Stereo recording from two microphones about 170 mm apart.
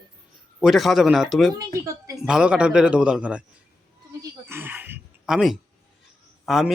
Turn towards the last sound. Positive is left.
turn(degrees=0)  # may be behind; listen again after turning